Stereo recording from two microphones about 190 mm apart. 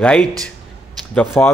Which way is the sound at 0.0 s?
5° left (ahead or behind).